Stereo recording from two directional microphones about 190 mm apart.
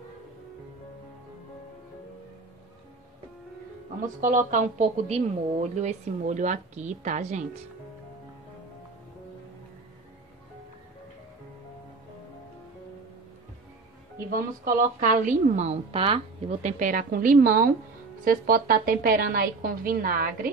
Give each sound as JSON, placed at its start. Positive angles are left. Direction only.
{"t": 4.0, "sound": "a woman's voice", "side_deg": -45}
{"t": 14.3, "sound": "a woman's voice", "side_deg": -45}